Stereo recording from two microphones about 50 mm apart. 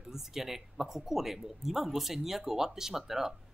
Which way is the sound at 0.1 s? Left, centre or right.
Centre.